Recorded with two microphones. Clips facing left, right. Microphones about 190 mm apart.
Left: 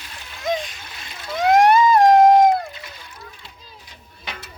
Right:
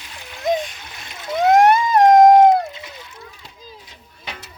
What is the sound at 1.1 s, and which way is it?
Splash, 20° right (ahead or behind).